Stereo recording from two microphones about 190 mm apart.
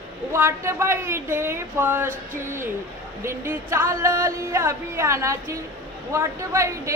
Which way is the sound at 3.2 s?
15° right (ahead or behind).